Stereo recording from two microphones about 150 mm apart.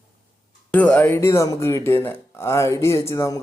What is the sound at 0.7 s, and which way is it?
Speech, 10° left (ahead or behind).